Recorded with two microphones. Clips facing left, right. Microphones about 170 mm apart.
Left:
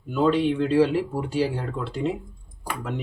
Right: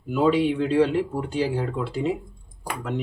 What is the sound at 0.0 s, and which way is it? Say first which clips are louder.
Speech: right 1 dB; 5° right (ahead or behind).